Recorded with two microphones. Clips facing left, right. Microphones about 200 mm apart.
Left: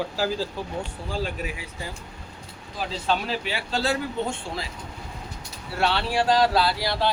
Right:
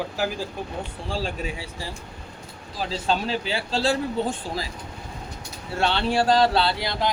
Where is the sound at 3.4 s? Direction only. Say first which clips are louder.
Right 2 dB; 30° right (ahead or behind).